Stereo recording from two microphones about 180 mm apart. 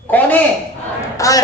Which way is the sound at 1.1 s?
20° left (ahead or behind).